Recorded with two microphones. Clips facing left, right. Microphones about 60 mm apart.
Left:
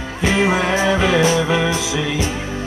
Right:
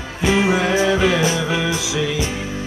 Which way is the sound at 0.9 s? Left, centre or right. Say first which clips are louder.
Left 1 dB; centre.